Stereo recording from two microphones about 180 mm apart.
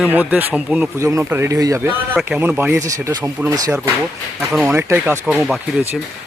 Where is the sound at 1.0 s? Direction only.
15° right (ahead or behind).